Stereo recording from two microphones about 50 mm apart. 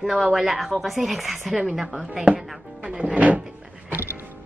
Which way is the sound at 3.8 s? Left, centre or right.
Right.